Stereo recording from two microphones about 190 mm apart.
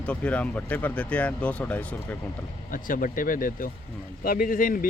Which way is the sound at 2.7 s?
45° left (ahead or behind).